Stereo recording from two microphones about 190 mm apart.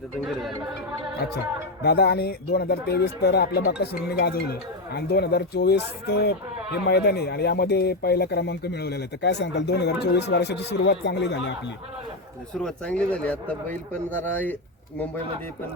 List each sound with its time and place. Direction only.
1.8 s speech: 60° left (ahead or behind)
12.5 s speech: 5° left (ahead or behind)